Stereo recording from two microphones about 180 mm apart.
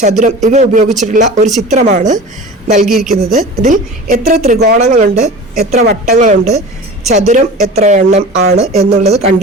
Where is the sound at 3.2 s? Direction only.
40° right (ahead or behind).